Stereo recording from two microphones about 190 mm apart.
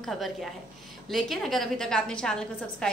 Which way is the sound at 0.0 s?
Centre (ahead or behind).